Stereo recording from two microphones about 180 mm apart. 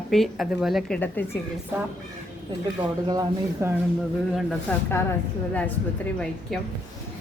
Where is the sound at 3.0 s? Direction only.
20° right (ahead or behind).